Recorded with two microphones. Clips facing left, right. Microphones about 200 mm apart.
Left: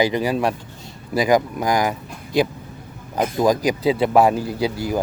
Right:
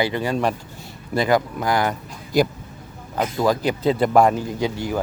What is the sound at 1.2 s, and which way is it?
Speech, 15° left (ahead or behind).